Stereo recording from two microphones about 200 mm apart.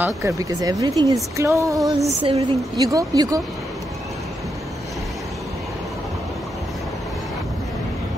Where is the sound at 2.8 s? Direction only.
15° right (ahead or behind).